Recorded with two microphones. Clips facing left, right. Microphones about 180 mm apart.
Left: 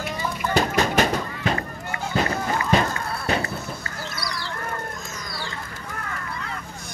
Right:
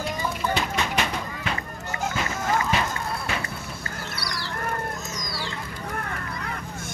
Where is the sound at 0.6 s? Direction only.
40° left (ahead or behind).